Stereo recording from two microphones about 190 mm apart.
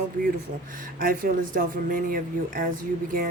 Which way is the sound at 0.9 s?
45° right (ahead or behind).